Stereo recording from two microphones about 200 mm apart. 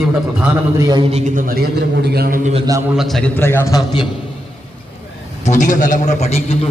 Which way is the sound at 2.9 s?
Centre (ahead or behind).